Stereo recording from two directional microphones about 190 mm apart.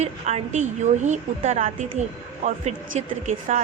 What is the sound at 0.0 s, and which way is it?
A woman's voice, 35° right (ahead or behind).